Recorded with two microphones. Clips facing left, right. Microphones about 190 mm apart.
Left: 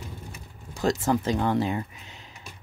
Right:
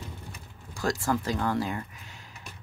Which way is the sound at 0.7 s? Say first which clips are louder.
Left 4 dB; 20° left (ahead or behind).